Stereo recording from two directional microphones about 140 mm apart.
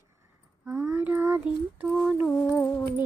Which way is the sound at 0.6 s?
15° right (ahead or behind).